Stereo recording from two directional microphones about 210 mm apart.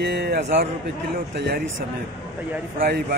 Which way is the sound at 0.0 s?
55° right (ahead or behind).